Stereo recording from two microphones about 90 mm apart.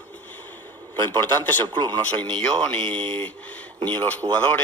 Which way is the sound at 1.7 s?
55° right (ahead or behind).